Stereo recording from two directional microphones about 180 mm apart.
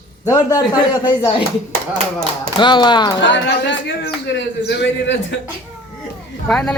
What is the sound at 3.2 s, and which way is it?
Speech, 85° left.